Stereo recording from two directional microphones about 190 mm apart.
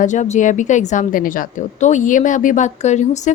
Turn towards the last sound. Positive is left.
turn(degrees=40)  # may be behind; listen again after turning